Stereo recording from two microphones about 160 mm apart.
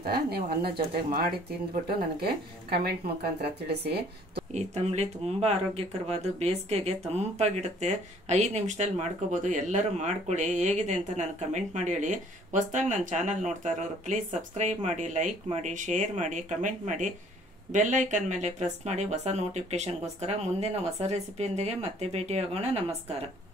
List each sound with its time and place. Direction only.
0.0 s speech: 80° right
4.6 s speech: 45° right (ahead or behind)